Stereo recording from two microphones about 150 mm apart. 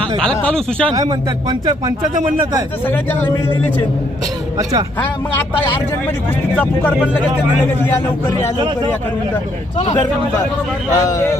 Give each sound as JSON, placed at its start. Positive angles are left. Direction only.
{"t": 0.0, "sound": "speech", "side_deg": 5}
{"t": 0.9, "sound": "speech", "side_deg": -25}
{"t": 2.8, "sound": "speech", "side_deg": 15}
{"t": 10.9, "sound": "speech", "side_deg": 20}